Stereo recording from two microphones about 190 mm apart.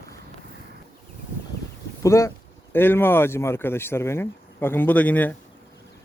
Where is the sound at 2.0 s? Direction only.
15° left (ahead or behind).